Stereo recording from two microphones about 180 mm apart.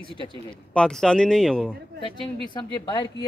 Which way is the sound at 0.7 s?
5° left (ahead or behind).